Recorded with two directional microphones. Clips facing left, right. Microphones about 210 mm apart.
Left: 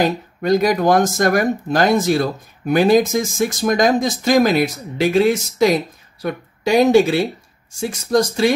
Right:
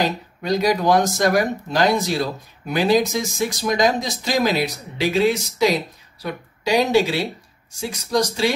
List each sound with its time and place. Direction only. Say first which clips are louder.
0.4 s speech: left 4 dB; 50° left (ahead or behind)